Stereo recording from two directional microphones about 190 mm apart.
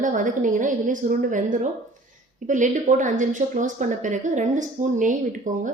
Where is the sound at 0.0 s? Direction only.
40° right (ahead or behind).